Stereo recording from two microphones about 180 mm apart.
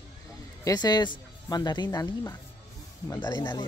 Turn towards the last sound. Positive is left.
turn(degrees=25)  # may be behind; listen again after turning